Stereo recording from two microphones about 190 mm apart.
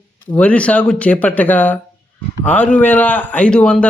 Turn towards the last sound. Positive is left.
turn(degrees=5)  # may be behind; listen again after turning